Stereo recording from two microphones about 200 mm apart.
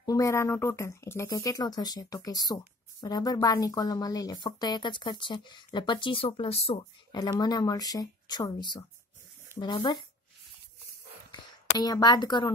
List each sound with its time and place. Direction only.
0.0 s speech: 15° left (ahead or behind)
11.8 s speech: 20° left (ahead or behind)